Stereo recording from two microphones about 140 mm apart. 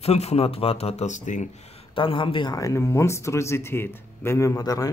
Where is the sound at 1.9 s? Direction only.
35° left (ahead or behind).